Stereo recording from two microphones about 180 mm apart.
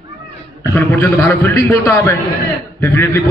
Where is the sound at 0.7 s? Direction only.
10° left (ahead or behind).